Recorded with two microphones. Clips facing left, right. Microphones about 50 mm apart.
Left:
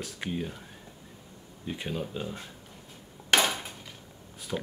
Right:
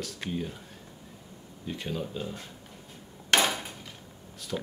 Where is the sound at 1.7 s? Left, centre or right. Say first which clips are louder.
Even; centre.